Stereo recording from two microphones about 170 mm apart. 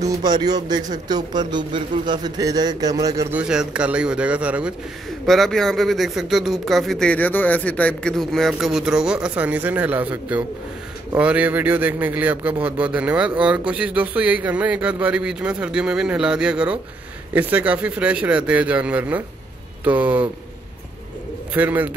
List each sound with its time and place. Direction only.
0.0 s speech: 20° right (ahead or behind)
3.3 s speech: 5° right (ahead or behind)
21.5 s speech: 10° right (ahead or behind)